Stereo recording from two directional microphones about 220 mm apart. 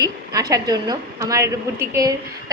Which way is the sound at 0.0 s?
15° right (ahead or behind).